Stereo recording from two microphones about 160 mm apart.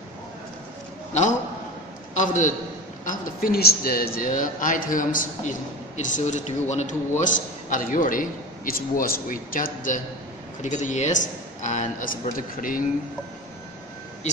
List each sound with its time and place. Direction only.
2.1 s a man's voice: 50° left (ahead or behind)
3.1 s a man's voice: 65° left (ahead or behind)